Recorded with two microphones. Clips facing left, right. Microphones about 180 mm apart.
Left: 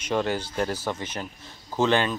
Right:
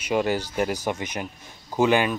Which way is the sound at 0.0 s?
10° right (ahead or behind).